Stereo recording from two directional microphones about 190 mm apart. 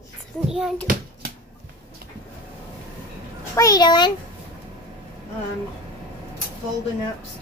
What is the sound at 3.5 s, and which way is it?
Speech, 20° left (ahead or behind).